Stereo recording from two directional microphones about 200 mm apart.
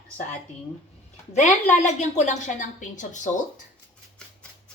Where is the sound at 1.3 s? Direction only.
40° left (ahead or behind).